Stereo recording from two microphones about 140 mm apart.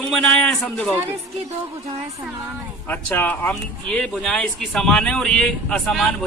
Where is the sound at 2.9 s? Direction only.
15° left (ahead or behind).